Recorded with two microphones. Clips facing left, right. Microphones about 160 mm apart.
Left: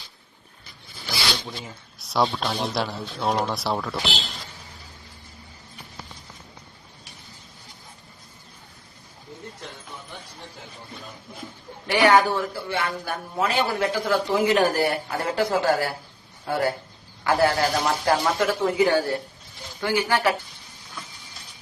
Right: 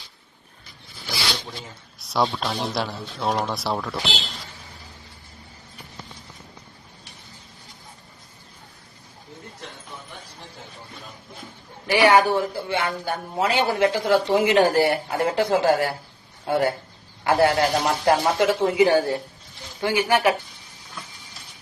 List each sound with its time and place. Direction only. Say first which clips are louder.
2.0 s speech: even; centre (ahead or behind)
11.9 s speech: right 1 dB; centre (ahead or behind)
12.3 s speech: right 3 dB; 25° right (ahead or behind)